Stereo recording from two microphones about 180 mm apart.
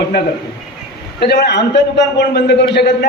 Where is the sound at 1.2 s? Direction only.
70° left (ahead or behind).